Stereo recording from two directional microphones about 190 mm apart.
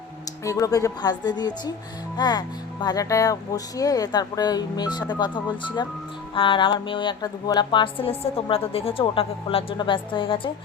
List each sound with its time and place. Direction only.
0.4 s a woman's voice: 15° left (ahead or behind)
2.1 s music: 20° left (ahead or behind)
2.8 s a woman's voice: 20° left (ahead or behind)